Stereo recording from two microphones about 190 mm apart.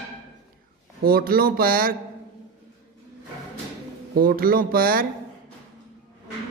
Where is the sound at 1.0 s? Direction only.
50° right (ahead or behind).